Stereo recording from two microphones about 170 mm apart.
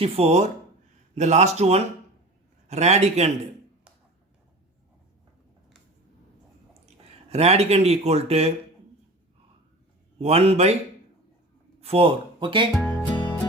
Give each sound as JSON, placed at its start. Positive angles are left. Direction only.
{"t": 0.0, "sound": "speech", "side_deg": -35}
{"t": 7.3, "sound": "speech", "side_deg": -40}
{"t": 10.2, "sound": "speech", "side_deg": -35}
{"t": 11.8, "sound": "speech", "side_deg": -35}
{"t": 13.1, "sound": "music", "side_deg": 25}